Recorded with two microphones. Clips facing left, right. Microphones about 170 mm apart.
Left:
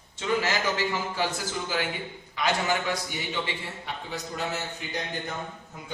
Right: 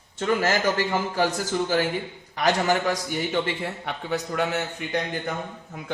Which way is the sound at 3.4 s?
65° right (ahead or behind).